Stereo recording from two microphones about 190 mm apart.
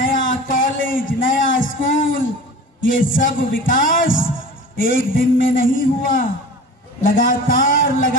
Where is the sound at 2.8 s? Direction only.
90° left.